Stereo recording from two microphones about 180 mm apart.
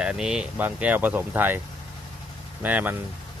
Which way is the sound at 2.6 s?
10° right (ahead or behind).